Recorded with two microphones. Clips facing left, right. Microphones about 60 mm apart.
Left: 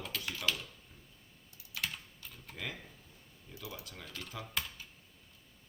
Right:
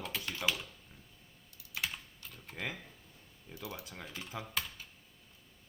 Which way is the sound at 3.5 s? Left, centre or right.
Centre.